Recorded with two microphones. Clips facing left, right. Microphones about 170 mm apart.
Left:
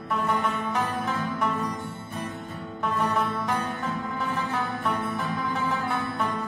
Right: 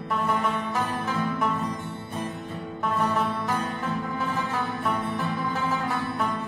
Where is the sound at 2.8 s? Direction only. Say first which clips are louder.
Right 1 dB; centre (ahead or behind).